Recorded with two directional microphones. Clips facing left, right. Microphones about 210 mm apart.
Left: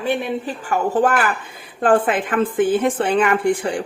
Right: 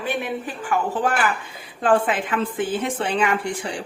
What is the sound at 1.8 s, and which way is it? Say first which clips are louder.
A woman's voice: left 3 dB; 50° left (ahead or behind).